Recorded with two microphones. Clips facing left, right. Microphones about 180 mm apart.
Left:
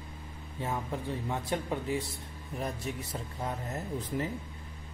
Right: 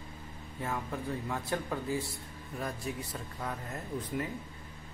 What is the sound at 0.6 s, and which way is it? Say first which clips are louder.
Speech: left 2 dB; 20° left (ahead or behind).